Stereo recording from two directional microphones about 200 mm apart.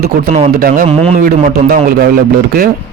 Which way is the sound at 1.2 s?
45° right (ahead or behind).